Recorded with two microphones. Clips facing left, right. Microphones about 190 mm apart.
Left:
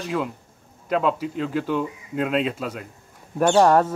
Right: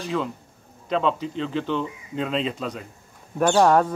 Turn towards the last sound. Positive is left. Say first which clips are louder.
# left 1 dB
turn(degrees=5)  # may be behind; listen again after turning